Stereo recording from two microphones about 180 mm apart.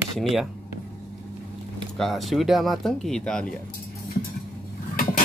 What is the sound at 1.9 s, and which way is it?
Speech, centre (ahead or behind).